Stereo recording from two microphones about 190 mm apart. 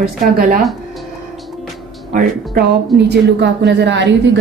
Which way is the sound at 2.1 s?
45° right (ahead or behind).